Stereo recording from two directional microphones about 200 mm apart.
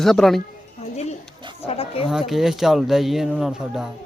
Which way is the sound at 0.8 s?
35° left (ahead or behind).